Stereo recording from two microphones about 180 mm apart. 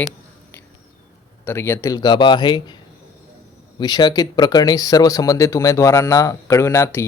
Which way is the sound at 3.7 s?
20° left (ahead or behind).